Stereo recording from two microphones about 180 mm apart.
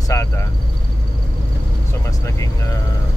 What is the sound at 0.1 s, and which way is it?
Speech, 15° left (ahead or behind).